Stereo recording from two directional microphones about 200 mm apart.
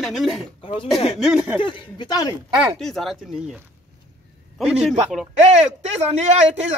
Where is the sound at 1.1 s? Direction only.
5° right (ahead or behind).